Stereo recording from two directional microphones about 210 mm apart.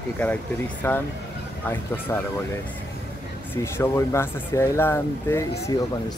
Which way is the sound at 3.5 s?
10° left (ahead or behind).